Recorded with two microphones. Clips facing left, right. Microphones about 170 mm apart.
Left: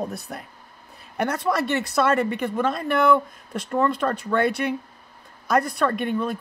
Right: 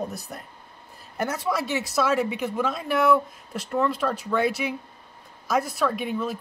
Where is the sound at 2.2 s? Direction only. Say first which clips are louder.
Left 2 dB; 5° right (ahead or behind).